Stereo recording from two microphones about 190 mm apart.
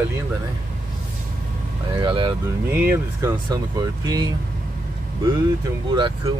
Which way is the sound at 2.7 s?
10° right (ahead or behind).